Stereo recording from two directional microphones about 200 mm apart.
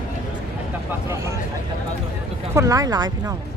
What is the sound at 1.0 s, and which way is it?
Speech, 15° right (ahead or behind).